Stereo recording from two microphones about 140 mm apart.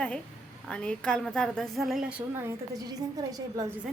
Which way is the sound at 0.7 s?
5° left (ahead or behind).